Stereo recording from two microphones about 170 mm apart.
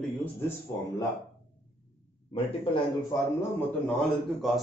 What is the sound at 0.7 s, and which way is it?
Speech, 10° left (ahead or behind).